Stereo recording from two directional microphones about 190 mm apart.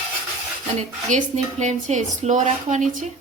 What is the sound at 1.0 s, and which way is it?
A woman's voice, 40° right (ahead or behind).